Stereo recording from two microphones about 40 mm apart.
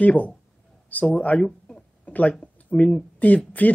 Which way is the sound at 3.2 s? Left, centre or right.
Left.